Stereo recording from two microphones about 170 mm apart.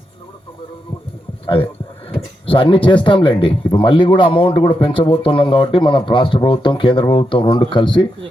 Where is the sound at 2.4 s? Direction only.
30° left (ahead or behind).